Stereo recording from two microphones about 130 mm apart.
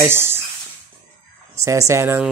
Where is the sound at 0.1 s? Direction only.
20° right (ahead or behind).